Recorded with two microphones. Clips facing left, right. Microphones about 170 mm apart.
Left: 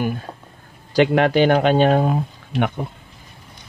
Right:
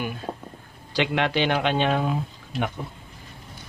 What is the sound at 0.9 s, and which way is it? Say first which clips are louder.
Speech: left 8 dB; 45° left (ahead or behind).